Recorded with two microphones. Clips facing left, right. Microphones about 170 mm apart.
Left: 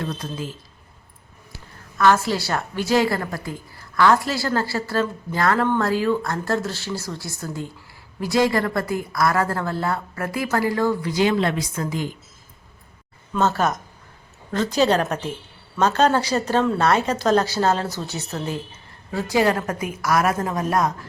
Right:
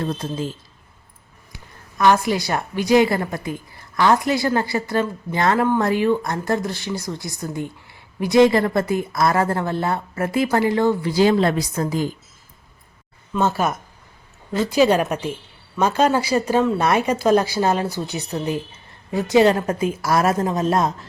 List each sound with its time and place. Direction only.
0.0 s a woman's voice: 25° right (ahead or behind)
1.5 s a woman's voice: 15° right (ahead or behind)
5.5 s a woman's voice: 10° right (ahead or behind); by 12.1 s 40° right (ahead or behind)
13.4 s a woman's voice: 10° right (ahead or behind)